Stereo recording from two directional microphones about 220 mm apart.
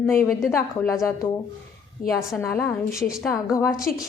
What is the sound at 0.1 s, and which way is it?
Speech, 10° left (ahead or behind).